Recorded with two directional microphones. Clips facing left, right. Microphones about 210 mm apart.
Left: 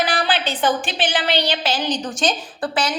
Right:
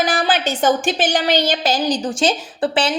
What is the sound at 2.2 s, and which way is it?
Speech, 30° right (ahead or behind).